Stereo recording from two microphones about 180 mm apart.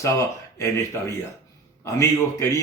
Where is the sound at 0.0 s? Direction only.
15° left (ahead or behind).